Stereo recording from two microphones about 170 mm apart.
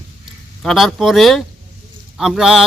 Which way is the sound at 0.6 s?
Centre (ahead or behind).